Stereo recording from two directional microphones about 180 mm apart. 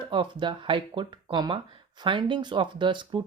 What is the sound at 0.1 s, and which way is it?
Speech, 25° right (ahead or behind).